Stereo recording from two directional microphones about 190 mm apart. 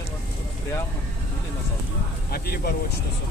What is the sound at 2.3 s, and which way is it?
Speech, 55° left (ahead or behind).